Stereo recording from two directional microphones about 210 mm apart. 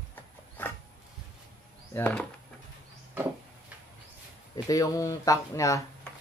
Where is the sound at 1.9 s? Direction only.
5° left (ahead or behind).